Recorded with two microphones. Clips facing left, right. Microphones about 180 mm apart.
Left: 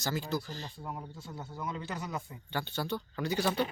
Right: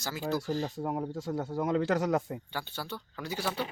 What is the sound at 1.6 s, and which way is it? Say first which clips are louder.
Speech: right 11 dB; 70° right (ahead or behind).